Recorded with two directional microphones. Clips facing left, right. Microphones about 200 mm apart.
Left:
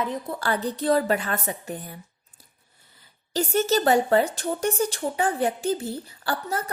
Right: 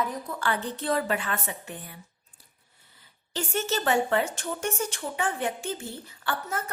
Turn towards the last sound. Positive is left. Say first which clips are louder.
# left 3 dB
turn(degrees=35)  # may be behind; listen again after turning